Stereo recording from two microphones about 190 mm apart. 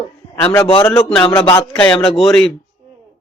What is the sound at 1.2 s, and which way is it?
Speech, 25° left (ahead or behind).